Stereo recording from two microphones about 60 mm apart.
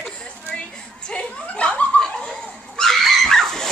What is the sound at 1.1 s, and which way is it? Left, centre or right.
Chuckle, left.